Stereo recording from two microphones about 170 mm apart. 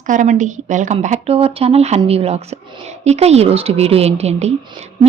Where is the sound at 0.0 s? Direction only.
50° right (ahead or behind).